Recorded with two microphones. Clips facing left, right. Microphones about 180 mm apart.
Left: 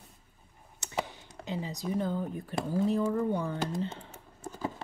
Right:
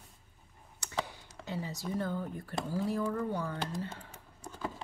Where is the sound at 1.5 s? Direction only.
15° left (ahead or behind).